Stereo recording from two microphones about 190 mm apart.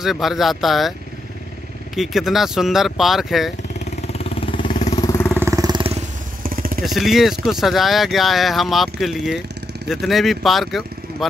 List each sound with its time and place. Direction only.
0.0 s speech: centre (ahead or behind)
2.0 s speech: centre (ahead or behind)
4.1 s vehicle: 30° left (ahead or behind)
4.9 s vehicle: 15° left (ahead or behind)
5.4 s vehicle: 15° right (ahead or behind)
6.4 s motorcycle: 50° right (ahead or behind)
6.8 s speech: centre (ahead or behind)